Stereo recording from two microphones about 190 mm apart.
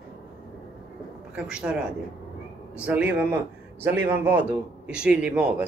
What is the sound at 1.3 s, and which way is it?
A man's voice, 5° right (ahead or behind).